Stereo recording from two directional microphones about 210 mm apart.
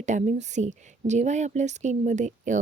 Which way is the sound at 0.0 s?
35° right (ahead or behind).